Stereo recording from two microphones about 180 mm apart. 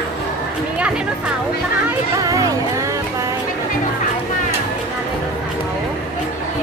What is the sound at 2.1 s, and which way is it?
Music, 20° right (ahead or behind).